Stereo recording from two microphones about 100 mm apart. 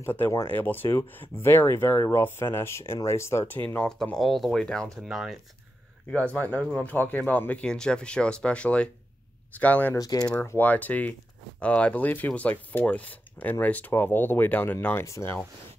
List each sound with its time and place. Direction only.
0.0 s speech: 20° left (ahead or behind)
3.8 s speech: 5° left (ahead or behind)
6.0 s speech: 15° left (ahead or behind)
9.9 s speech: 40° left (ahead or behind)
10.4 s speech: 20° left (ahead or behind)